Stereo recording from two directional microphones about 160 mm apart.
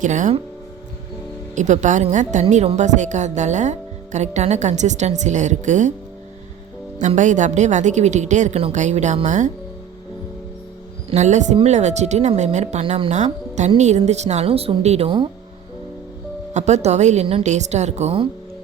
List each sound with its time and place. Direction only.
0.0 s a woman's voice: 50° right (ahead or behind)
1.5 s a woman's voice: 50° right (ahead or behind)
7.2 s a woman's voice: 50° right (ahead or behind)
11.1 s a woman's voice: 45° right (ahead or behind)
16.6 s a woman's voice: 45° right (ahead or behind)